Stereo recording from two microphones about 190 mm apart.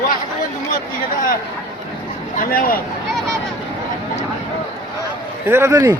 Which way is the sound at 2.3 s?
50° left (ahead or behind).